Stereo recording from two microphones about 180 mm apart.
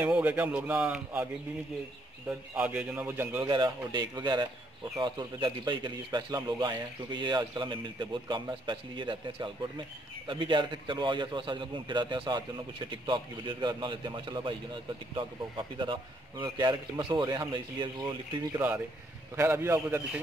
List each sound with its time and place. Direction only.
0.0 s speech: 10° right (ahead or behind)
2.5 s speech: 5° right (ahead or behind)
3.4 s a man's voice: 25° right (ahead or behind)